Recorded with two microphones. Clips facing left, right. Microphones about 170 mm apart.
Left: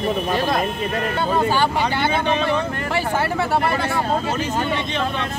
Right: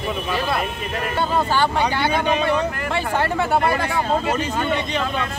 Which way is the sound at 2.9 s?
5° left (ahead or behind).